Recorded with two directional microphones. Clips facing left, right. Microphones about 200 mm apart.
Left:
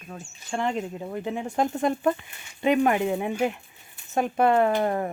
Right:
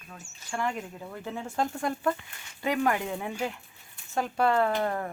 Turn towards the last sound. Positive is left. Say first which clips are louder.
# left 4 dB
turn(degrees=25)  # may be behind; listen again after turning